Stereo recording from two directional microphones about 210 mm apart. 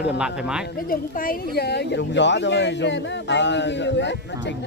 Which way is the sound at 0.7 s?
45° left (ahead or behind).